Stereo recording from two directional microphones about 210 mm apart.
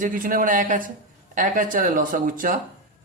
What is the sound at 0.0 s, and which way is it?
A man's voice, 40° right (ahead or behind).